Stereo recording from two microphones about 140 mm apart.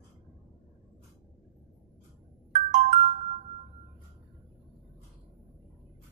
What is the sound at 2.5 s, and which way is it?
Ringtone, 60° right (ahead or behind).